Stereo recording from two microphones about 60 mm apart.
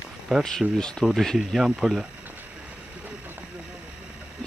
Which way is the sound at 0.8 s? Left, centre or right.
Centre.